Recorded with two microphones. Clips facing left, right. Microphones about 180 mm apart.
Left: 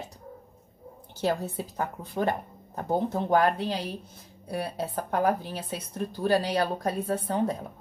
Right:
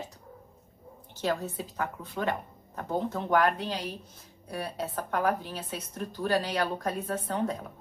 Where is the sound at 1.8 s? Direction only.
35° left (ahead or behind).